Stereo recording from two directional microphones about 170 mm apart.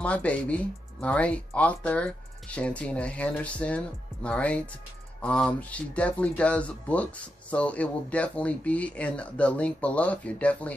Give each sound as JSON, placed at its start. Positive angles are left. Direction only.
{"t": 0.0, "sound": "speech", "side_deg": 10}